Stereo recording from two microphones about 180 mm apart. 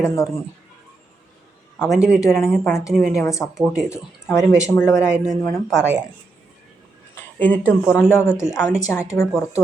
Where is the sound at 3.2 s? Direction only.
15° left (ahead or behind).